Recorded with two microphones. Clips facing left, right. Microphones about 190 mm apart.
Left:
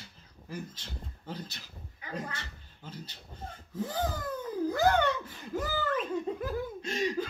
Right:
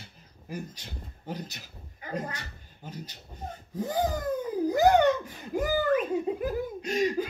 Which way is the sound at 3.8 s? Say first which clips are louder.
Right 5 dB; 40° right (ahead or behind).